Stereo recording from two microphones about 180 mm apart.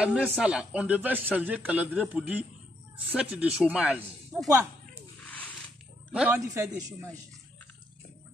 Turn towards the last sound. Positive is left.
turn(degrees=-15)  # may be behind; listen again after turning